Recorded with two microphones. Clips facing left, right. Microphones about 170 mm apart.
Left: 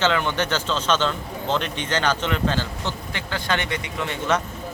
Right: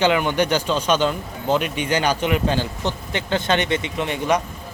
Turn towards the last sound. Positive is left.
turn(degrees=-15)  # may be behind; listen again after turning